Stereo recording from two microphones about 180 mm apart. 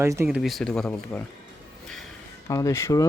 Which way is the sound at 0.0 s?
15° right (ahead or behind).